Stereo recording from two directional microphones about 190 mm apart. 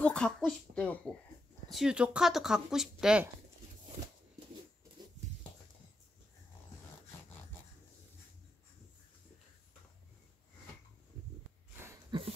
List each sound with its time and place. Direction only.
0.0 s speech: 5° left (ahead or behind)
12.1 s dog: 25° right (ahead or behind)